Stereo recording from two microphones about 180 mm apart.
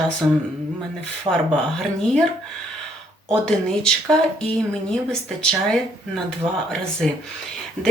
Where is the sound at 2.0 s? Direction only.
5° left (ahead or behind).